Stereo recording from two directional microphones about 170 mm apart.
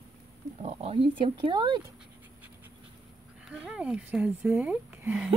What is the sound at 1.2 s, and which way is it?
Speech, 30° right (ahead or behind).